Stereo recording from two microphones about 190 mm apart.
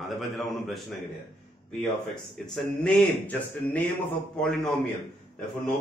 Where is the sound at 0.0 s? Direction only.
Centre (ahead or behind).